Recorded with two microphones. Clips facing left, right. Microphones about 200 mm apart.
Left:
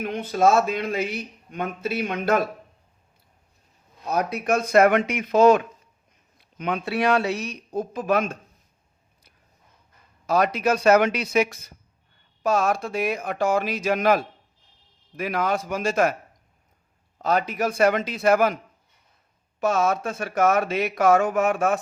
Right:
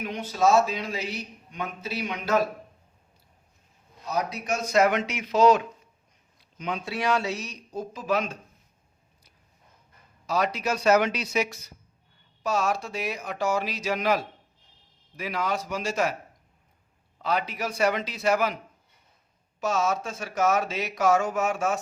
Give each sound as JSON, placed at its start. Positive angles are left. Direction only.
{"t": 0.0, "sound": "a man's voice", "side_deg": 55}
{"t": 4.0, "sound": "a man's voice", "side_deg": 55}
{"t": 10.2, "sound": "a man's voice", "side_deg": 55}
{"t": 17.2, "sound": "a man's voice", "side_deg": 45}